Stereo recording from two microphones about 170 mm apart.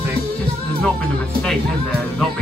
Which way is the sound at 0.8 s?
5° left (ahead or behind).